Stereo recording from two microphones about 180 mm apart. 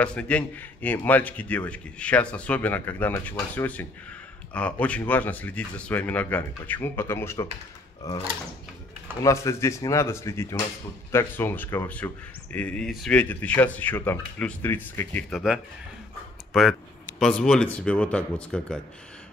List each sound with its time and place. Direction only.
0.0 s a man's voice: 5° left (ahead or behind)
9.2 s a man's voice: 15° left (ahead or behind)